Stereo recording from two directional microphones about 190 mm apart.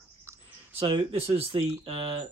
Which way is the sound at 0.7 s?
25° right (ahead or behind).